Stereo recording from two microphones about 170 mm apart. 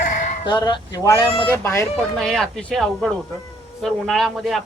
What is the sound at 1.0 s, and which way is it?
Speech, 15° left (ahead or behind).